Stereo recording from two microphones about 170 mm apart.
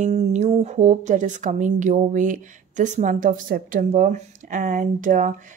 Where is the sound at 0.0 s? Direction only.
40° right (ahead or behind).